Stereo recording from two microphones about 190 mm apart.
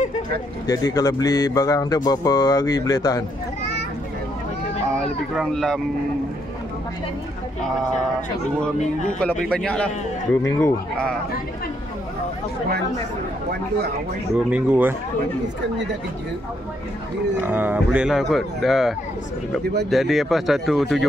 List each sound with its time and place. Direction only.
0.7 s speech: 20° left (ahead or behind)
4.9 s speech: centre (ahead or behind)
9.2 s speech: 5° left (ahead or behind)
14.5 s speech: 10° right (ahead or behind)
17.4 s speech: 10° right (ahead or behind)